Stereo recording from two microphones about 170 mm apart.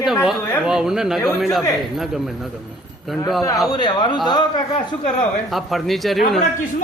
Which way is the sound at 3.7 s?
25° left (ahead or behind).